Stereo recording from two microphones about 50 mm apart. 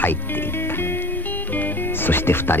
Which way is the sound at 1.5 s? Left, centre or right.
Left.